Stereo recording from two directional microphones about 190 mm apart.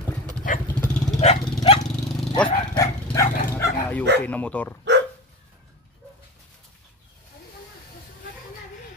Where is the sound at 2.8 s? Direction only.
15° left (ahead or behind).